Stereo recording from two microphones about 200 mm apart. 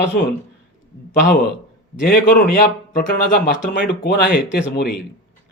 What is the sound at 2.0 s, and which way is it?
Speech, 45° left (ahead or behind).